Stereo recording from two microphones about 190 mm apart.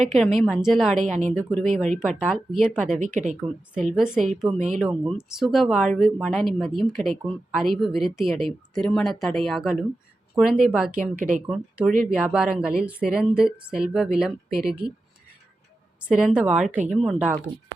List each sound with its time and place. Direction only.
0.1 s a woman's voice: centre (ahead or behind)
0.9 s speech: 40° right (ahead or behind)
1.6 s a woman's voice: centre (ahead or behind)
11.2 s speech: 45° right (ahead or behind)
11.4 s a woman's voice: 5° right (ahead or behind)
16.0 s a woman's voice: 5° right (ahead or behind)